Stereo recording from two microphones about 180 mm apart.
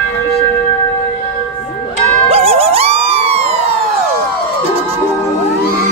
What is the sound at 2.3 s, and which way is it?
Dog, 35° right (ahead or behind).